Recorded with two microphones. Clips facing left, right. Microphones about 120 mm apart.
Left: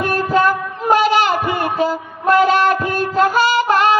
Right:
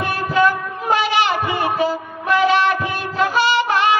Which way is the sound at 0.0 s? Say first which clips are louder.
Left 2 dB; 45° left (ahead or behind).